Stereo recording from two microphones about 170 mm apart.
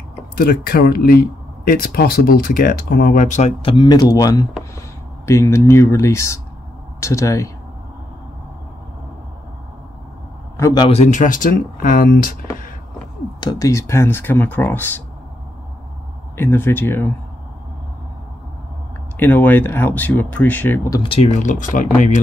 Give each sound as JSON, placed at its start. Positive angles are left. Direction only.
{"t": 0.4, "sound": "speech", "side_deg": 60}
{"t": 3.7, "sound": "speech", "side_deg": 25}
{"t": 10.6, "sound": "speech", "side_deg": 25}
{"t": 10.9, "sound": "speech", "side_deg": 45}
{"t": 13.4, "sound": "speech", "side_deg": 25}
{"t": 16.3, "sound": "speech", "side_deg": 10}
{"t": 19.1, "sound": "speech", "side_deg": 10}
{"t": 21.0, "sound": "speech", "side_deg": 35}